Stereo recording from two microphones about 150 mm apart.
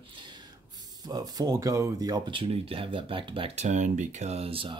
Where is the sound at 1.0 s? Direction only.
25° right (ahead or behind).